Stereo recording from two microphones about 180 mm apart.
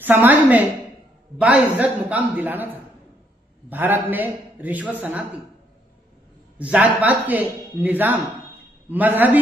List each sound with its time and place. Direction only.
0.0 s speech: 10° right (ahead or behind)
6.6 s speech: 10° right (ahead or behind)